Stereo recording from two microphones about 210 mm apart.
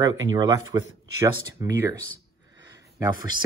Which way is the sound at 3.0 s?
20° right (ahead or behind).